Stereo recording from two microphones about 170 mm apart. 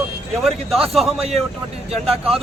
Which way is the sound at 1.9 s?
35° right (ahead or behind).